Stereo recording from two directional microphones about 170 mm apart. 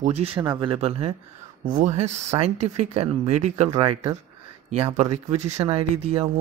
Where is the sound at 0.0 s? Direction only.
40° right (ahead or behind).